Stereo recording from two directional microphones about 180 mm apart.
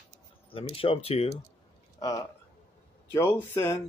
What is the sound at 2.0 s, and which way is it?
Speech, 20° left (ahead or behind).